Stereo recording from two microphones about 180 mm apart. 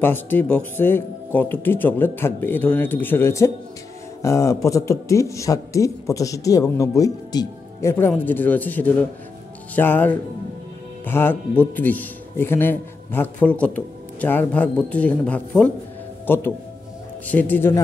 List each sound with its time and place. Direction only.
0.0 s a man's voice: 10° left (ahead or behind)